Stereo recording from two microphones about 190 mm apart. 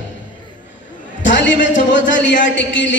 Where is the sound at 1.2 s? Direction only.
70° left (ahead or behind).